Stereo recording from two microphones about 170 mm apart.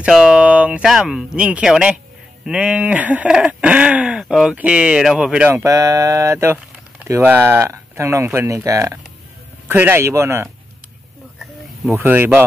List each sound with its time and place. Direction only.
0.0 s speech: 5° right (ahead or behind)
11.9 s speech: 15° right (ahead or behind)